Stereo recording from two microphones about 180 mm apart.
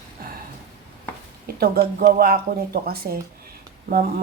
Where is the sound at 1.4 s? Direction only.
60° right (ahead or behind).